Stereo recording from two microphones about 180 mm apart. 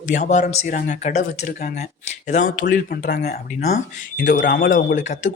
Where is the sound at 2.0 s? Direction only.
40° left (ahead or behind); by 3.4 s 60° left (ahead or behind).